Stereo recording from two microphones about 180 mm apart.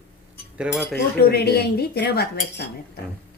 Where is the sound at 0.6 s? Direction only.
5° right (ahead or behind).